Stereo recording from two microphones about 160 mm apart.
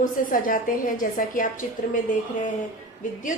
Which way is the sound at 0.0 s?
55° left (ahead or behind).